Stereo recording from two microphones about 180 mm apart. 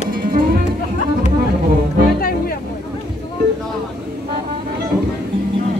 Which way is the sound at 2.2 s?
55° left (ahead or behind).